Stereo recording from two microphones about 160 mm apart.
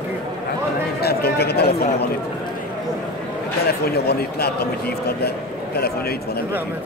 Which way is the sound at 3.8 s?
80° left.